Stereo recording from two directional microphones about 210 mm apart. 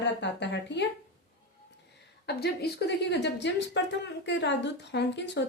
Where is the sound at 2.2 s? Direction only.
50° left (ahead or behind).